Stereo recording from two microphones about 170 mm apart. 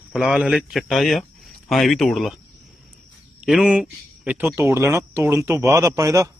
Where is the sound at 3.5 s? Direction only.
5° right (ahead or behind).